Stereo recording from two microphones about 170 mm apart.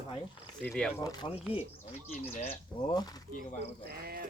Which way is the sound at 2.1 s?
50° left (ahead or behind).